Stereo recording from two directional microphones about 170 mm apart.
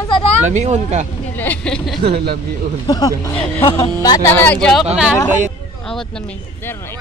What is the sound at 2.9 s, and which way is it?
Speech, 20° left (ahead or behind).